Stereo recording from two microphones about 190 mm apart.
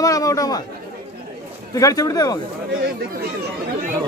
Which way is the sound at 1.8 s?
20° left (ahead or behind).